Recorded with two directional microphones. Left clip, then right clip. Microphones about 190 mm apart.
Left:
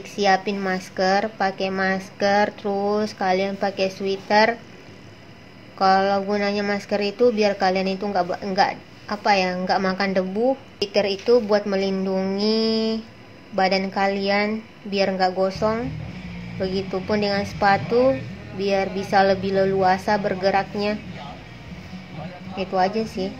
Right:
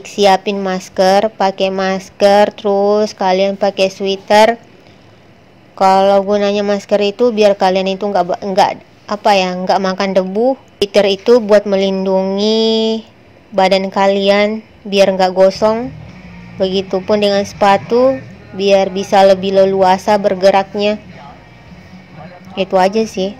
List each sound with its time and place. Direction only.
0.0 s speech: 35° right (ahead or behind)
5.8 s speech: 35° right (ahead or behind)
22.6 s speech: 40° right (ahead or behind)